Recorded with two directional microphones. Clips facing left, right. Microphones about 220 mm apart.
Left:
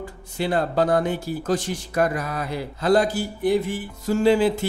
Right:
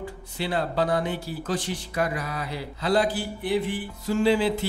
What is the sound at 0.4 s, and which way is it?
Speech, 45° left (ahead or behind).